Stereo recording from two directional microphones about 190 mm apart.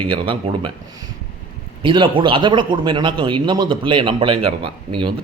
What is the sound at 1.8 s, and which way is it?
A man's voice, 25° right (ahead or behind).